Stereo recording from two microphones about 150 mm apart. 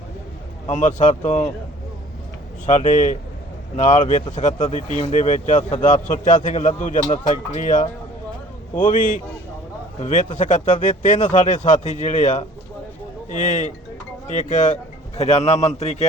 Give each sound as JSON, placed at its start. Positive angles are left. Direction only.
{"t": 0.7, "sound": "speech", "side_deg": 55}
{"t": 2.6, "sound": "speech", "side_deg": 55}